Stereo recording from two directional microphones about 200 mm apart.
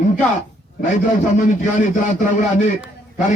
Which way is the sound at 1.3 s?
40° left (ahead or behind).